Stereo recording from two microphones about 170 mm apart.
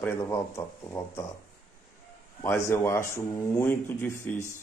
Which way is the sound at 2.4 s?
15° left (ahead or behind).